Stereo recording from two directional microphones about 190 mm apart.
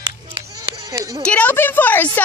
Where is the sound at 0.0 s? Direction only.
20° right (ahead or behind).